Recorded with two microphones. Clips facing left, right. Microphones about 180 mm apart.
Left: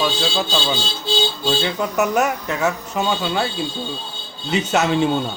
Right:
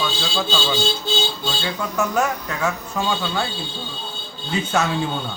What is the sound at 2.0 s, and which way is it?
Speech, 20° left (ahead or behind).